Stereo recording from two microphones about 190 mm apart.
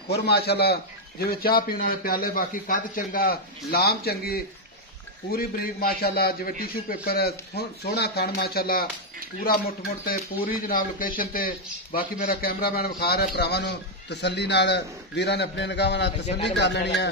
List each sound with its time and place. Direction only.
0.1 s speech: 60° left (ahead or behind)
16.3 s speech: 35° left (ahead or behind)
16.5 s speech: 65° left (ahead or behind)